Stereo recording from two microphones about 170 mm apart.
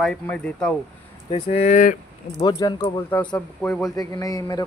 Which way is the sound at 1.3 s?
40° left (ahead or behind).